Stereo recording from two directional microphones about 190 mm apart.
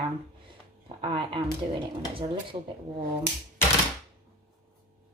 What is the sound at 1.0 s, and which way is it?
Speech, 30° right (ahead or behind).